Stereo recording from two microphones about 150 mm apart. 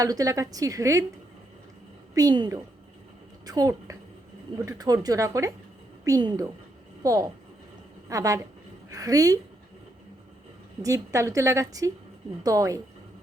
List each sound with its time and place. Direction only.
0.0 s a woman's voice: 25° right (ahead or behind)
2.1 s a woman's voice: 25° right (ahead or behind)
10.8 s a woman's voice: 20° right (ahead or behind)